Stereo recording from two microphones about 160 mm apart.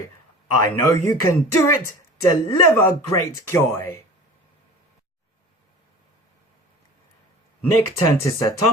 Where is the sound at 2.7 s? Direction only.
15° left (ahead or behind).